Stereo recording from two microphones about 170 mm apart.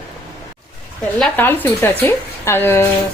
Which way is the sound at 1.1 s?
5° left (ahead or behind).